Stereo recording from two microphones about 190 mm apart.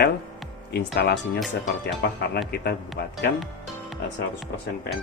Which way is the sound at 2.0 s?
55° left (ahead or behind).